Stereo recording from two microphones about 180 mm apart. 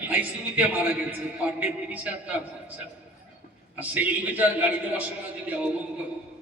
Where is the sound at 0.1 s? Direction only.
10° right (ahead or behind).